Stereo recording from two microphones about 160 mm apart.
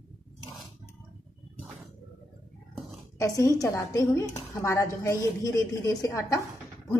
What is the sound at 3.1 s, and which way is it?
A woman's voice, 20° left (ahead or behind).